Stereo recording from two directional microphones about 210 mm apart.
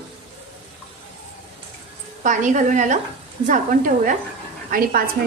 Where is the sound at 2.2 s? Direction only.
35° right (ahead or behind).